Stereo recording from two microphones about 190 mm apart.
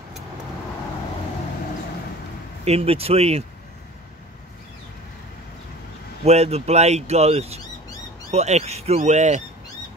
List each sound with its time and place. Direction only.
2.6 s speech: 30° right (ahead or behind)
6.2 s speech: 35° right (ahead or behind)